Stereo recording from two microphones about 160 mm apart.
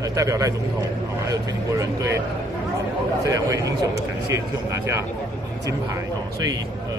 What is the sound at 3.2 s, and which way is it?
Speech, 20° right (ahead or behind).